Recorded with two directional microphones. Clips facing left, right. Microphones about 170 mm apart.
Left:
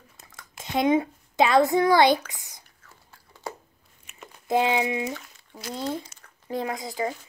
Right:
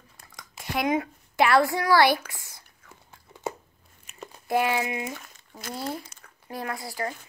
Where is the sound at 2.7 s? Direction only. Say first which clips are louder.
Right 2 dB; 20° right (ahead or behind).